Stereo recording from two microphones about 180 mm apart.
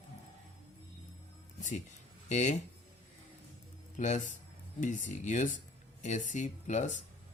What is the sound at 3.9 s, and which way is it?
Speech, 45° left (ahead or behind).